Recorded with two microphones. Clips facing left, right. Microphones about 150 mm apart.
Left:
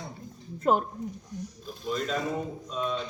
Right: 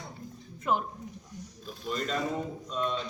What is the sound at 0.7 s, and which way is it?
Speech, 45° left (ahead or behind).